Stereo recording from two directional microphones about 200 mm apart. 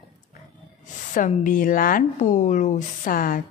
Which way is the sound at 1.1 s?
40° left (ahead or behind).